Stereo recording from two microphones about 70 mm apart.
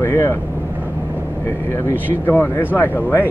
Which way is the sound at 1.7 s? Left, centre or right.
Left.